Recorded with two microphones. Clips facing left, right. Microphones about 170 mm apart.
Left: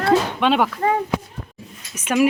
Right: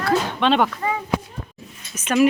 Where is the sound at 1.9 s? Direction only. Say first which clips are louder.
Right 1 dB; 10° left (ahead or behind).